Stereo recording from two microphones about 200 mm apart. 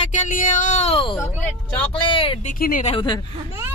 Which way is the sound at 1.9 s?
25° left (ahead or behind).